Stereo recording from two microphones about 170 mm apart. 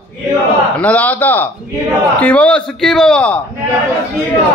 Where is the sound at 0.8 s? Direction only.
10° left (ahead or behind).